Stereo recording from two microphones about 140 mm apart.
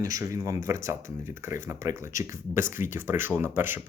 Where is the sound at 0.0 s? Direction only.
25° right (ahead or behind).